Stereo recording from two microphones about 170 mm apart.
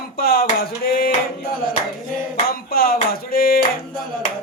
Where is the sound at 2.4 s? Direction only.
60° left (ahead or behind).